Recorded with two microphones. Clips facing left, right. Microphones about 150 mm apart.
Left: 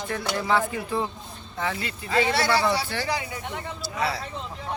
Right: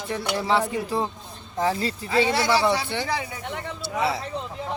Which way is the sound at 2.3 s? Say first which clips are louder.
Right 1 dB; 15° right (ahead or behind).